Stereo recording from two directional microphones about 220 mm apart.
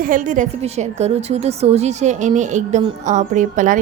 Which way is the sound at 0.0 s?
35° right (ahead or behind).